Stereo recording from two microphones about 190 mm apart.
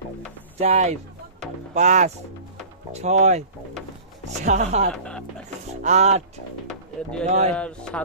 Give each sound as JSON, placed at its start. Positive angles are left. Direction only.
{"t": 0.6, "sound": "speech", "side_deg": -35}
{"t": 1.4, "sound": "music", "side_deg": -40}
{"t": 2.9, "sound": "speech", "side_deg": -35}
{"t": 7.2, "sound": "speech", "side_deg": -35}
{"t": 7.5, "sound": "speech", "side_deg": 5}